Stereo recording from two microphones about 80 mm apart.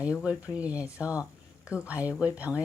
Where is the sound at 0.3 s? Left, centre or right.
Centre.